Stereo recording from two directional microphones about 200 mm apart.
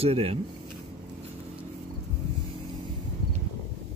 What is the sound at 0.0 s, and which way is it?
Speech, 30° right (ahead or behind).